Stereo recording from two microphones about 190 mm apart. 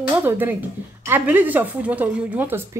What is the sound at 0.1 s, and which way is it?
A woman's voice, 10° right (ahead or behind).